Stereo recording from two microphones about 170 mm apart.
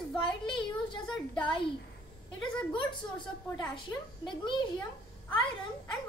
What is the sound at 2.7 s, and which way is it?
A woman's voice, 25° left (ahead or behind).